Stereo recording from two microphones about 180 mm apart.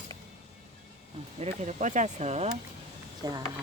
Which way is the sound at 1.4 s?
40° right (ahead or behind).